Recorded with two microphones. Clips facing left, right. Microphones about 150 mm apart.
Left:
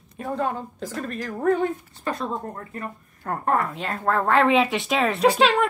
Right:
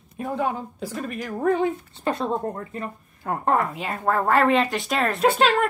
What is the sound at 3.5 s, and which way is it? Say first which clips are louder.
Speech: even; 5° right (ahead or behind).